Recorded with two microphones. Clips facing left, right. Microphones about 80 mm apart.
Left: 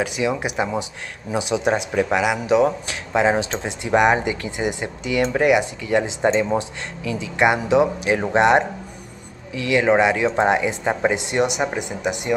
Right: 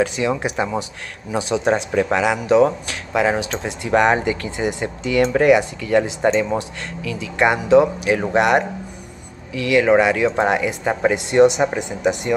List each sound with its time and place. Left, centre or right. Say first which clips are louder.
0.0 s speech: right 2 dB; centre